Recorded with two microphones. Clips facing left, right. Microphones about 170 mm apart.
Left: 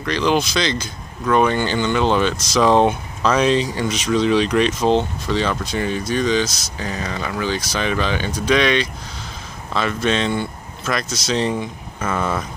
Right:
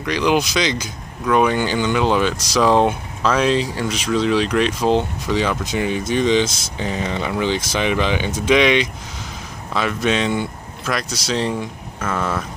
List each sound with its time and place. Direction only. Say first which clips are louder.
0.0 s speech: right 1 dB; 10° right (ahead or behind)
12.0 s speech: left 1 dB; 10° left (ahead or behind)